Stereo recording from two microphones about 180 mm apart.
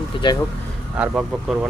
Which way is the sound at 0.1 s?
30° left (ahead or behind).